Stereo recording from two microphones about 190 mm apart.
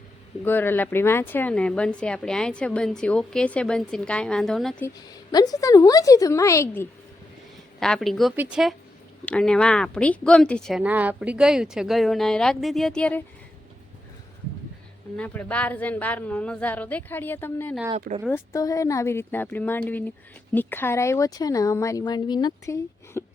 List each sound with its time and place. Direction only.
0.4 s speech: 10° left (ahead or behind)
5.3 s speech: 20° left (ahead or behind)
7.8 s speech: centre (ahead or behind)
15.1 s speech: 5° left (ahead or behind)